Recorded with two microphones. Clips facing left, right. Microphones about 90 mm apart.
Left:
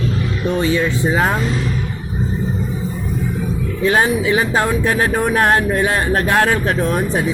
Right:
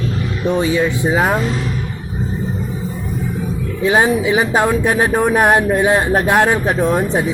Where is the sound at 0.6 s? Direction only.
15° right (ahead or behind).